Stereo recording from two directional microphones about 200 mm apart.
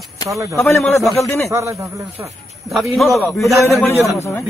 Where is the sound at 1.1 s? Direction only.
15° left (ahead or behind).